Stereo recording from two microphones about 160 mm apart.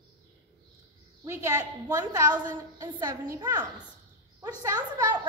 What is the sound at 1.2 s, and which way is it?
A woman's voice, 20° right (ahead or behind).